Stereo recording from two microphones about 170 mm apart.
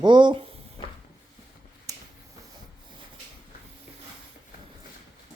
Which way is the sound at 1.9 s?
20° right (ahead or behind).